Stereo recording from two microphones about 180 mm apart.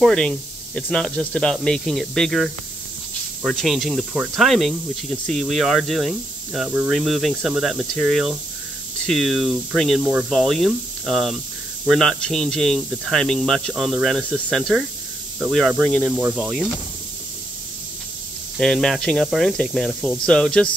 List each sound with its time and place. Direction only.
0.0 s speech: 5° left (ahead or behind)
18.6 s speech: centre (ahead or behind)